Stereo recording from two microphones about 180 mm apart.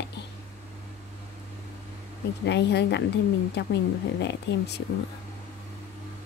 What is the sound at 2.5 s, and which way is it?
Speech, 70° left (ahead or behind).